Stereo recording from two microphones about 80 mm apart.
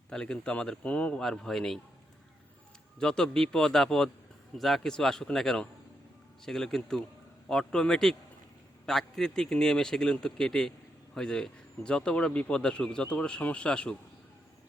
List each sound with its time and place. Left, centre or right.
0.1 s speech: centre
3.0 s a man's voice: centre